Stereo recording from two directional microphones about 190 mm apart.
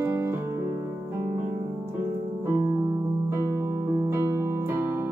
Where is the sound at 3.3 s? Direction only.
15° right (ahead or behind).